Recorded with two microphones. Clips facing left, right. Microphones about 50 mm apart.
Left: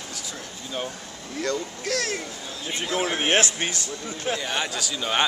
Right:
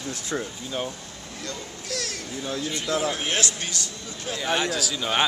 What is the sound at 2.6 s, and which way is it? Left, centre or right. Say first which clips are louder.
A man's voice: left 1 dB; left.